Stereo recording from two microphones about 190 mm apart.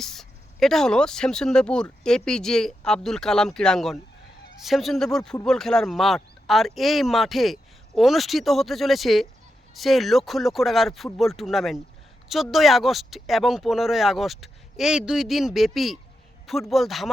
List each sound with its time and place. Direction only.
0.0 s speech: centre (ahead or behind)